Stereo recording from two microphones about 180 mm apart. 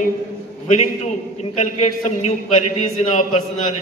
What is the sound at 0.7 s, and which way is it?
A man's voice, 40° left (ahead or behind).